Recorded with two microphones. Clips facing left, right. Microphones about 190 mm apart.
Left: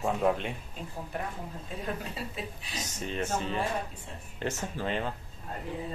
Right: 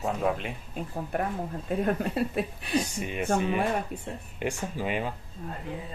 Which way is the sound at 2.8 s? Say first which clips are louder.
Right 2 dB; 10° right (ahead or behind).